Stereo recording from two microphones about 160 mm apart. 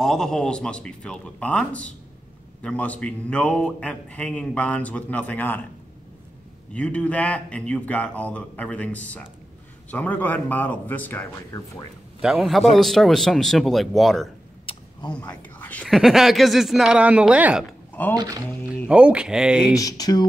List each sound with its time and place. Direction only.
0.0 s a woman's voice: 5° left (ahead or behind)
6.7 s a man's voice: 5° left (ahead or behind)
12.2 s a woman's voice: centre (ahead or behind)
14.7 s vehicle: 25° left (ahead or behind)
15.1 s a woman's voice: 10° left (ahead or behind); by 17.6 s 10° right (ahead or behind)
18.0 s a man's voice: 10° left (ahead or behind)
18.9 s a woman's voice: 5° right (ahead or behind)
19.7 s speech: 20° left (ahead or behind)